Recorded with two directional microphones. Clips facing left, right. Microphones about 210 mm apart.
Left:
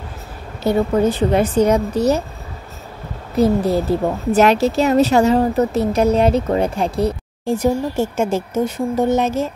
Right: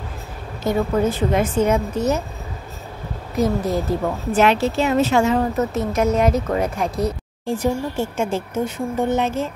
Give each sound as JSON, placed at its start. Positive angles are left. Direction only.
{"t": 1.1, "sound": "a woman's voice", "side_deg": 35}
{"t": 3.3, "sound": "a woman's voice", "side_deg": 30}
{"t": 7.4, "sound": "a woman's voice", "side_deg": 40}